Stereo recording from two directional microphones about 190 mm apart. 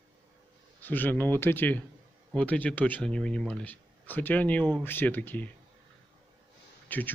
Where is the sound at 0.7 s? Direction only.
10° left (ahead or behind).